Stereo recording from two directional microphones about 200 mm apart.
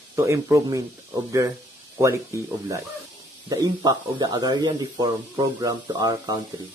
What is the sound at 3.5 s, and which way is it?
Speech, 20° right (ahead or behind).